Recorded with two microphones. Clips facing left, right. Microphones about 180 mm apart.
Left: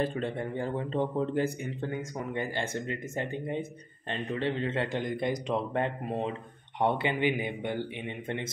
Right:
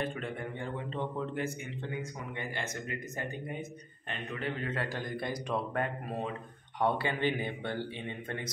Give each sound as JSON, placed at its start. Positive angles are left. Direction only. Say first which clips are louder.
{"t": 0.0, "sound": "a man's voice", "louder": "left 5 dB", "side_deg": 35}
{"t": 2.5, "sound": "a man's voice", "louder": "left 5 dB", "side_deg": 30}